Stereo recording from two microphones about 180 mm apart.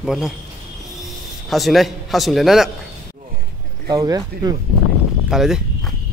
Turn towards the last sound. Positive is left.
turn(degrees=-5)  # may be behind; listen again after turning